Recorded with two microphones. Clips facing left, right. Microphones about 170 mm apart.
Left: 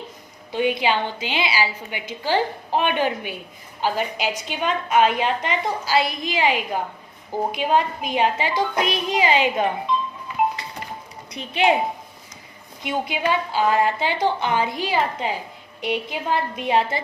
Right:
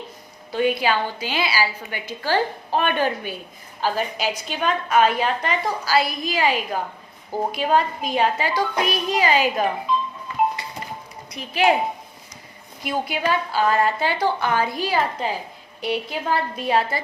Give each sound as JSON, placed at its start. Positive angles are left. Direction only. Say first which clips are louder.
{"t": 0.5, "sound": "a woman's voice", "louder": "even", "side_deg": 20}
{"t": 11.3, "sound": "a woman's voice", "louder": "even", "side_deg": 30}
{"t": 12.8, "sound": "a woman's voice", "louder": "even", "side_deg": 20}